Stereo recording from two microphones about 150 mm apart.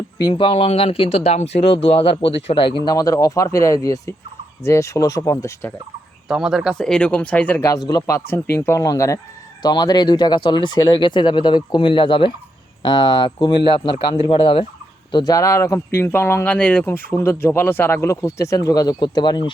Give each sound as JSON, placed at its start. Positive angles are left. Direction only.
{"t": 0.2, "sound": "speech", "side_deg": 30}
{"t": 6.2, "sound": "speech", "side_deg": -5}
{"t": 15.1, "sound": "speech", "side_deg": 25}